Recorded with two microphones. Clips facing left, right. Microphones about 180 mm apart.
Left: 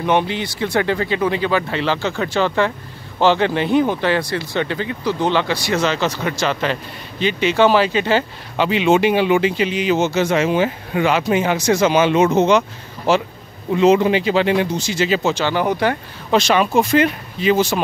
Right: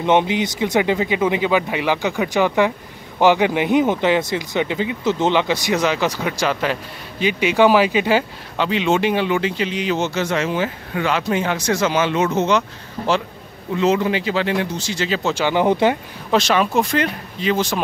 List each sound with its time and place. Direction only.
0.0 s speech: 20° right (ahead or behind)
8.5 s speech: 10° left (ahead or behind)
15.3 s speech: 15° right (ahead or behind)
16.3 s speech: centre (ahead or behind)